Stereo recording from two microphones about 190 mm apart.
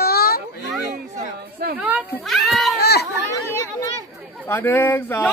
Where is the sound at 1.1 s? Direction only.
55° right (ahead or behind).